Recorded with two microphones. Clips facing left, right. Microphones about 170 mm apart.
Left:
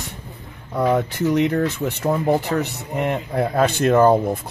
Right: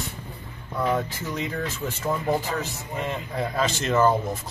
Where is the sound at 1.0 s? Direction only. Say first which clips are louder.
Left 10 dB; 65° left (ahead or behind).